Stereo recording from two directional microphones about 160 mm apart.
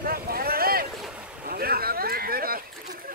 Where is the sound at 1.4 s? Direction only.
70° right (ahead or behind).